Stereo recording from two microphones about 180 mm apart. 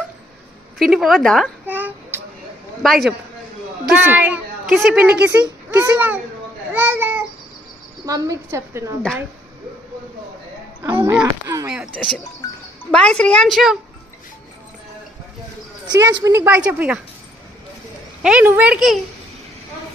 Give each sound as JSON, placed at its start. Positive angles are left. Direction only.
{"t": 0.7, "sound": "a woman's voice", "side_deg": 0}
{"t": 1.7, "sound": "a sound", "side_deg": -10}
{"t": 2.8, "sound": "a woman's voice", "side_deg": 0}
{"t": 6.7, "sound": "a sound", "side_deg": -10}
{"t": 8.0, "sound": "a woman's voice", "side_deg": -20}
{"t": 10.8, "sound": "speech", "side_deg": -20}
{"t": 11.7, "sound": "a woman's voice", "side_deg": -5}
{"t": 15.9, "sound": "a woman's voice", "side_deg": -20}
{"t": 18.2, "sound": "a woman's voice", "side_deg": -10}